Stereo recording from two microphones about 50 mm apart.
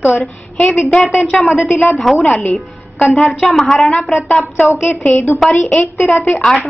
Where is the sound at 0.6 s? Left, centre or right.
Left.